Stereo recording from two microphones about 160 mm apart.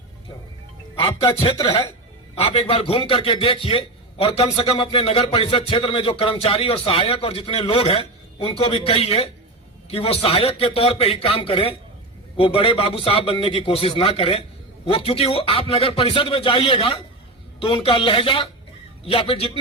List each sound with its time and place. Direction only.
0.9 s a man's voice: 35° left (ahead or behind)